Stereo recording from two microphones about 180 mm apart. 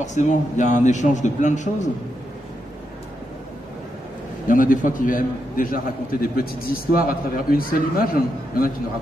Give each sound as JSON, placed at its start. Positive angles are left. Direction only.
{"t": 0.0, "sound": "a man's voice", "side_deg": 40}
{"t": 4.5, "sound": "a man's voice", "side_deg": 50}